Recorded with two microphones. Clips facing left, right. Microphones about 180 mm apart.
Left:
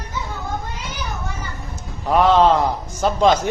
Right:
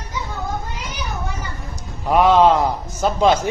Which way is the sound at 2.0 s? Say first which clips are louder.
Right 1 dB; 10° right (ahead or behind).